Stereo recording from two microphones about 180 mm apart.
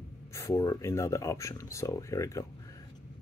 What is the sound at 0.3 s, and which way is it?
Speech, 20° left (ahead or behind).